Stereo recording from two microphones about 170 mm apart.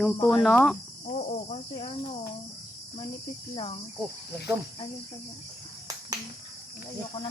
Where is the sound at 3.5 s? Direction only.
30° left (ahead or behind).